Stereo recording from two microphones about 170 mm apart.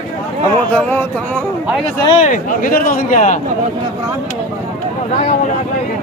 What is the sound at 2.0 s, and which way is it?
Speech, 40° left (ahead or behind).